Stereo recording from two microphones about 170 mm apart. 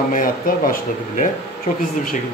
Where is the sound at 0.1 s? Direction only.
50° left (ahead or behind).